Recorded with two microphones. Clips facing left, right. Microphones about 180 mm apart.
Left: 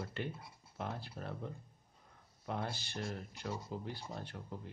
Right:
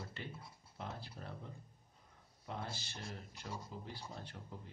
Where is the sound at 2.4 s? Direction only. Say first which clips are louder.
Left 5 dB; 60° left (ahead or behind).